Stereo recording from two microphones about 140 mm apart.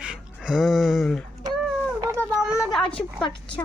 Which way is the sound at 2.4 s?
5° right (ahead or behind).